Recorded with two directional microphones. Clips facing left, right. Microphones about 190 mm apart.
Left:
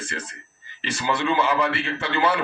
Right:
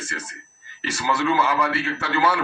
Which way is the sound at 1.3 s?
20° left (ahead or behind).